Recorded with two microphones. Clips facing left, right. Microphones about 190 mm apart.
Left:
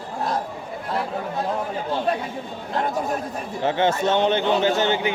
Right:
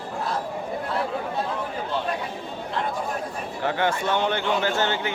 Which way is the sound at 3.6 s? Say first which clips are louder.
Left 4 dB; 20° left (ahead or behind).